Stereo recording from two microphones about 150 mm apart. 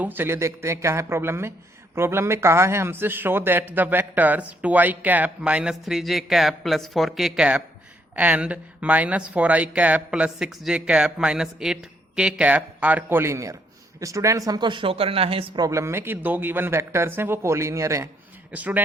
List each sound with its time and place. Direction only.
0.0 s a man's voice: 15° right (ahead or behind); by 15.6 s 40° right (ahead or behind)
15.6 s a man's voice: 20° right (ahead or behind)
18.5 s a man's voice: 10° right (ahead or behind)